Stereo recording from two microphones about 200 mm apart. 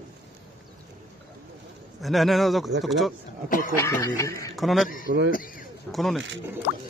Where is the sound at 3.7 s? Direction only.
15° left (ahead or behind).